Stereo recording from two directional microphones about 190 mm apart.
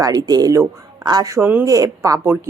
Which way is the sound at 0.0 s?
20° right (ahead or behind).